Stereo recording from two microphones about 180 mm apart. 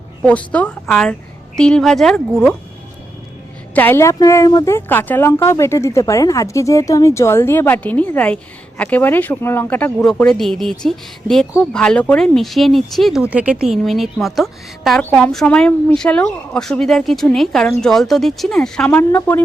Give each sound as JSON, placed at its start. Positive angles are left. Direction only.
{"t": 0.3, "sound": "speech", "side_deg": 5}
{"t": 3.8, "sound": "speech", "side_deg": 10}